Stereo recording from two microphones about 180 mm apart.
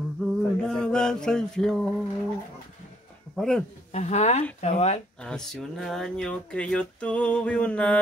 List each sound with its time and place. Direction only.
0.2 s mantra: 5° left (ahead or behind)
3.3 s speech: 5° left (ahead or behind)
3.9 s speech: 40° left (ahead or behind)
5.2 s speech: 5° left (ahead or behind)